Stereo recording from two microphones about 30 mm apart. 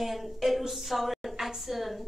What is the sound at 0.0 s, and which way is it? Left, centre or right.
A woman's voice, centre.